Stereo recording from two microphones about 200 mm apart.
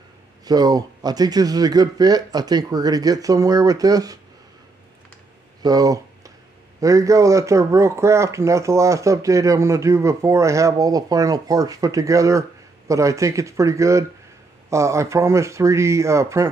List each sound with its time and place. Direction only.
0.5 s speech: 20° right (ahead or behind)
5.6 s a sound: 20° right (ahead or behind)
6.8 s speech: 15° right (ahead or behind)